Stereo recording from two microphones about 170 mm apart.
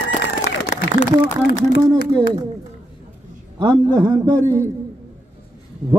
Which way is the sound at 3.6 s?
25° right (ahead or behind).